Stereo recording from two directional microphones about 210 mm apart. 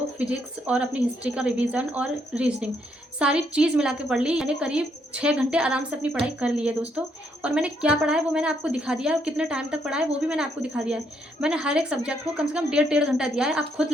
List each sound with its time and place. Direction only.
0.2 s a woman's voice: 5° right (ahead or behind)